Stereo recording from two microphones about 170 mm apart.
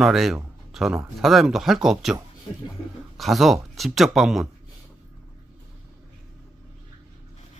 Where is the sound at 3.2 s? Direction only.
Centre (ahead or behind).